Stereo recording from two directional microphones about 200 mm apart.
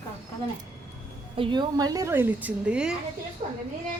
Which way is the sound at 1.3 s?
25° right (ahead or behind).